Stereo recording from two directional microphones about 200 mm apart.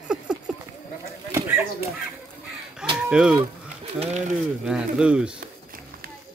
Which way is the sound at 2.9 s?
5° right (ahead or behind).